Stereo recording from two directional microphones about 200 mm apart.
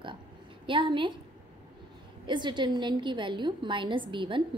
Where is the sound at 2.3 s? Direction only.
25° right (ahead or behind).